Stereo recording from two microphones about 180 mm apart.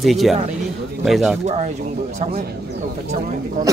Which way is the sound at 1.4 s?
40° right (ahead or behind).